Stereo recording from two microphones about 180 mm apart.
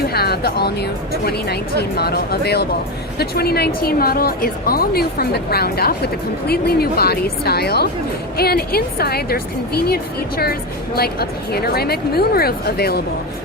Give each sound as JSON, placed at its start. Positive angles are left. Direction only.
{"t": 0.0, "sound": "a woman's voice", "side_deg": 60}